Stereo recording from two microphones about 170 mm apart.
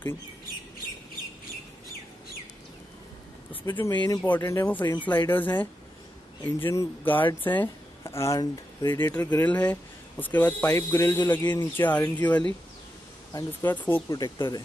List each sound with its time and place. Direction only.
3.6 s speech: 15° left (ahead or behind)
3.9 s speech: 25° left (ahead or behind)
4.4 s speech: 15° left (ahead or behind)
14.1 s speech: 25° left (ahead or behind)